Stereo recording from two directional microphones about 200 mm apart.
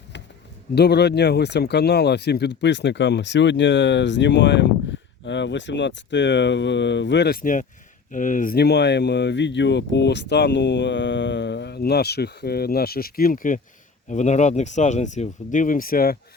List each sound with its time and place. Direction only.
0.8 s speech: 55° left (ahead or behind)